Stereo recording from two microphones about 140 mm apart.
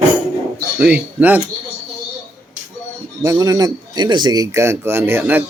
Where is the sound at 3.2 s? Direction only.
25° right (ahead or behind).